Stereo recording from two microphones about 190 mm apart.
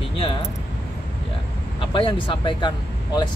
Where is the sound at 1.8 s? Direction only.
25° left (ahead or behind).